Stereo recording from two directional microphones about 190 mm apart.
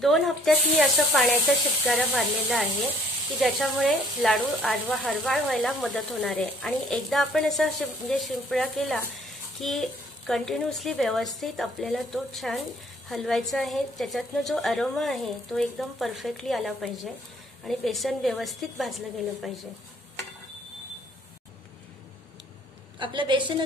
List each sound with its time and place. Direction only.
0.0 s speech: centre (ahead or behind)
22.9 s a woman's voice: 25° right (ahead or behind)